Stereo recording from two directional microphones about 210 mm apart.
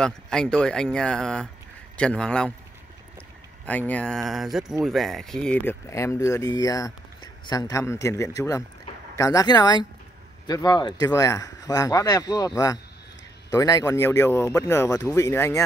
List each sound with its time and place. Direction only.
0.0 s speech: 5° left (ahead or behind)
3.6 s speech: 5° left (ahead or behind)